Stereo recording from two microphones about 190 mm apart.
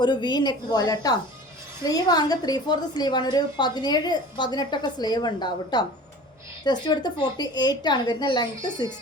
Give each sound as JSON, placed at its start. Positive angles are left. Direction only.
{"t": 0.0, "sound": "a woman's voice", "side_deg": 25}